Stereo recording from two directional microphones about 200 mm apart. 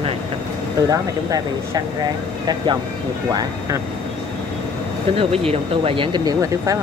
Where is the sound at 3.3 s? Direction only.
20° right (ahead or behind).